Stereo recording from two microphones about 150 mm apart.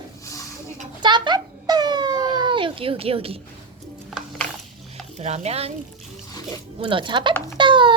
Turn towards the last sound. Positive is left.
turn(degrees=-35)  # may be behind; listen again after turning